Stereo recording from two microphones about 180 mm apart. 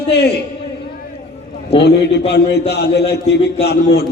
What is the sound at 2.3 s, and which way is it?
Speech, 65° left (ahead or behind).